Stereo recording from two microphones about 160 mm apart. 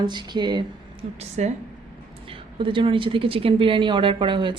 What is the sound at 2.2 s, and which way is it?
Speech, 35° right (ahead or behind).